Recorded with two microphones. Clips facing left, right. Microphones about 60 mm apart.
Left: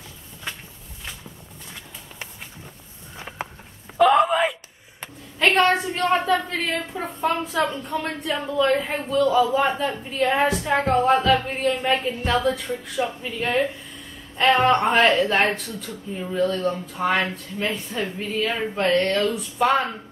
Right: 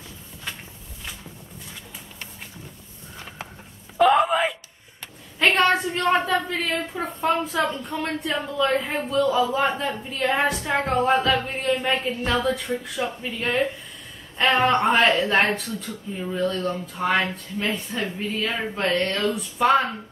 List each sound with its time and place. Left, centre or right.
3.2 s a sound: centre
4.0 s wail: centre
5.6 s a woman's voice: centre